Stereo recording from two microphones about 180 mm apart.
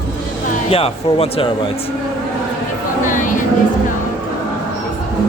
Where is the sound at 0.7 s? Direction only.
30° left (ahead or behind).